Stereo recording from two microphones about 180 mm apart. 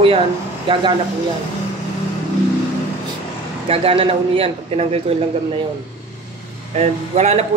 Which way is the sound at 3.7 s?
30° right (ahead or behind).